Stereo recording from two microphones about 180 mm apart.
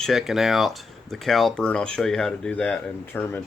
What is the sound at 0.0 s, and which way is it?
Speech, centre (ahead or behind).